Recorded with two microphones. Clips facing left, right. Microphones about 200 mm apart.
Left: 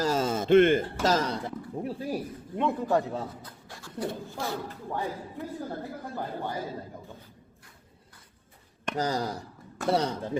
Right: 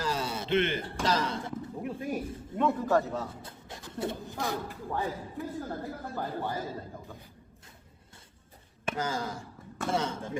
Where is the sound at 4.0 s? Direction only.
20° right (ahead or behind).